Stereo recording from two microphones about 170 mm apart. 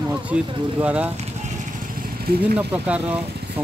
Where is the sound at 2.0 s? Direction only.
70° right (ahead or behind).